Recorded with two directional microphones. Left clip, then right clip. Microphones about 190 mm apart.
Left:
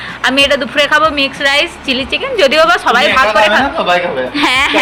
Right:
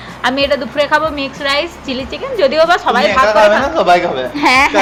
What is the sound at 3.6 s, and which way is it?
Speech, 70° right (ahead or behind).